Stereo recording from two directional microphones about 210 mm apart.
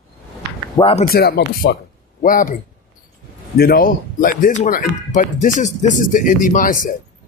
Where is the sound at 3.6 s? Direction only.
45° left (ahead or behind).